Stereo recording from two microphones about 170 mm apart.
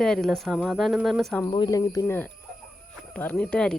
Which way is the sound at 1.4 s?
25° left (ahead or behind).